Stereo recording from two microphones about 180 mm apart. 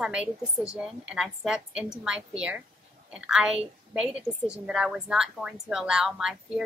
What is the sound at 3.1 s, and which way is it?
A woman's voice, 5° right (ahead or behind).